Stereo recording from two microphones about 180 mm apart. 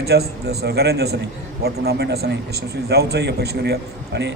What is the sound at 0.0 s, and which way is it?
A man's voice, 65° right (ahead or behind).